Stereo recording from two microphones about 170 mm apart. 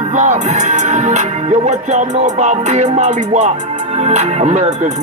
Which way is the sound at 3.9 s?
40° right (ahead or behind).